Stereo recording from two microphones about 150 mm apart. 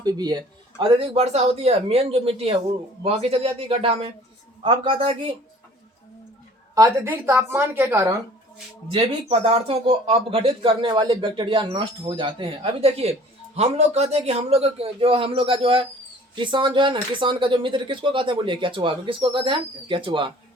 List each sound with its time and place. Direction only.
0.0 s speech: 25° right (ahead or behind)
0.8 s speech: 40° right (ahead or behind)
6.7 s a woman's voice: 20° right (ahead or behind)
8.9 s speech: 40° right (ahead or behind)